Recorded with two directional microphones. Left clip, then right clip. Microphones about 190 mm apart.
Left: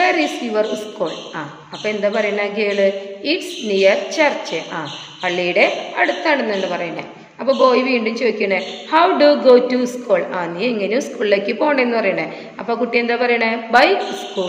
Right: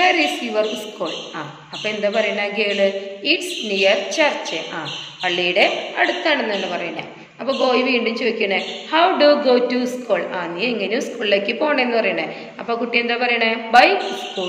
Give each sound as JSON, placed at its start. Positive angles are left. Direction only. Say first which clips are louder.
{"t": 0.0, "sound": "a woman's voice", "louder": "even", "side_deg": 50}
{"t": 1.9, "sound": "a woman's voice", "louder": "left 1 dB", "side_deg": 50}